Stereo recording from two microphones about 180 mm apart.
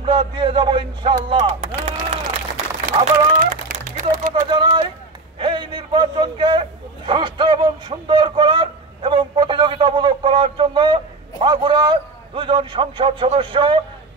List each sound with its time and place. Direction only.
0.0 s a man's voice: 30° right (ahead or behind)
1.3 s speech: 40° right (ahead or behind)
2.5 s a sound: 40° right (ahead or behind)
4.3 s a man's voice: 25° right (ahead or behind)